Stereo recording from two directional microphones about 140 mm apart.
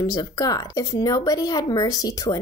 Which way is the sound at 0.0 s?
25° left (ahead or behind).